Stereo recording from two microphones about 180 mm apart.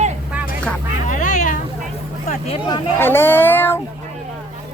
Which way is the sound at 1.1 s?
45° left (ahead or behind).